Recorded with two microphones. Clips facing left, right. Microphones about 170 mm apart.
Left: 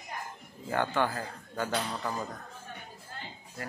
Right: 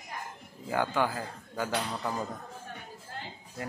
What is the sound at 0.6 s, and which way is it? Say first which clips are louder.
A man's voice: even; 10° right (ahead or behind).